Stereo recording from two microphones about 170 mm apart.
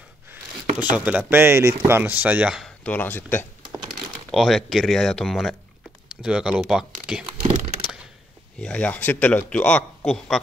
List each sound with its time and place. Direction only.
0.9 s speech: 10° right (ahead or behind)
2.8 s a man's voice: 10° left (ahead or behind)
4.3 s speech: centre (ahead or behind)
7.5 s a sound: 40° right (ahead or behind)
8.5 s a man's voice: 5° left (ahead or behind)